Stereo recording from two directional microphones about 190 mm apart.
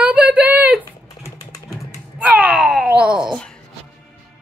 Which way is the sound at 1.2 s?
20° left (ahead or behind).